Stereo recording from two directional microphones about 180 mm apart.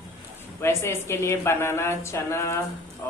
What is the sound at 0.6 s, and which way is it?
Speech, 15° left (ahead or behind).